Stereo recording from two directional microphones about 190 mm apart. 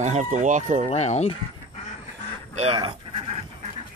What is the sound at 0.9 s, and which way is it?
Speech, 35° left (ahead or behind).